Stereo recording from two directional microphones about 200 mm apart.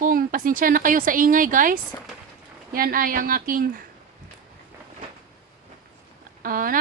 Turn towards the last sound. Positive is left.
turn(degrees=-45)  # may be behind; listen again after turning